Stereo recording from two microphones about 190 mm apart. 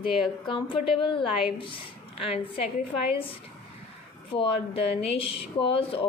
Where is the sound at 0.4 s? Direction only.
25° left (ahead or behind).